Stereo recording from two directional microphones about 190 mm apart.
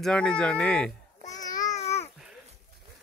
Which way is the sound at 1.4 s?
20° left (ahead or behind).